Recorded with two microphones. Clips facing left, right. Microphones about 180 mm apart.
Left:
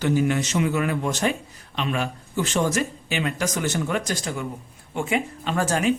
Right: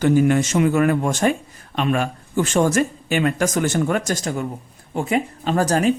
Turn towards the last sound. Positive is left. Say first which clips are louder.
# right 4 dB
turn(degrees=-40)  # may be behind; listen again after turning